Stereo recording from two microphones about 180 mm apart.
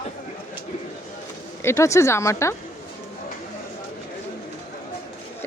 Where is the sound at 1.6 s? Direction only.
15° left (ahead or behind).